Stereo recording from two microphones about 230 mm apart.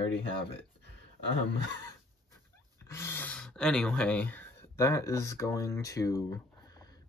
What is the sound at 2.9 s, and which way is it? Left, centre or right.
Speech, centre.